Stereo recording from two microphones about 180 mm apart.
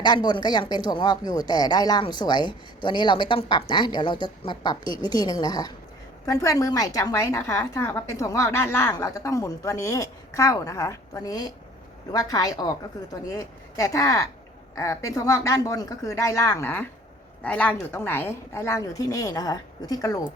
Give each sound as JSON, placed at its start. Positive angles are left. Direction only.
{"t": 0.0, "sound": "a woman's voice", "side_deg": 25}